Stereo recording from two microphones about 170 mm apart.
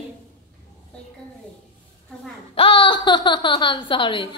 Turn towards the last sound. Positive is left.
turn(degrees=30)  # may be behind; listen again after turning